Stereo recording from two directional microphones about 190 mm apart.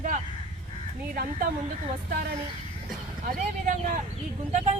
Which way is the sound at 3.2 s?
45° right (ahead or behind).